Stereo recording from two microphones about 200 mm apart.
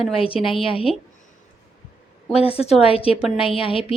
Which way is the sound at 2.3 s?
30° left (ahead or behind).